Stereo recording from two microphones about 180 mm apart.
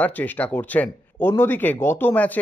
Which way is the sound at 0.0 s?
10° left (ahead or behind).